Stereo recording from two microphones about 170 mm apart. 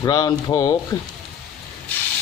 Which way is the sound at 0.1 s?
25° left (ahead or behind).